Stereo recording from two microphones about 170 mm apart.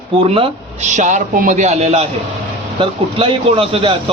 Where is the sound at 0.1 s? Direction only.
35° right (ahead or behind).